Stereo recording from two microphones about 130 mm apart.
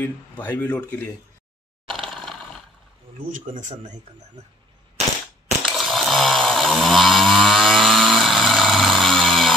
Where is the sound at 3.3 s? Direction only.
85° right.